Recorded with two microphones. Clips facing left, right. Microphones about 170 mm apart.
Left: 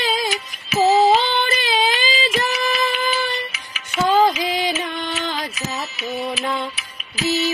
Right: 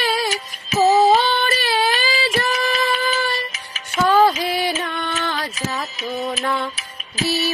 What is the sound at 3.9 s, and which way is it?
Music, 15° left (ahead or behind).